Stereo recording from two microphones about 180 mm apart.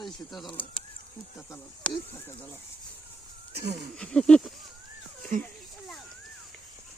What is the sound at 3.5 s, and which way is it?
Speech, 60° right (ahead or behind).